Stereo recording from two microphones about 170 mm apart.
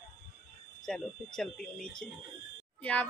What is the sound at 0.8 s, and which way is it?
A woman's voice, centre (ahead or behind).